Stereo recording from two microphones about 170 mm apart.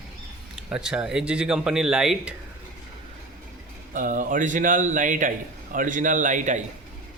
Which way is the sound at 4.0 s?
50° right (ahead or behind).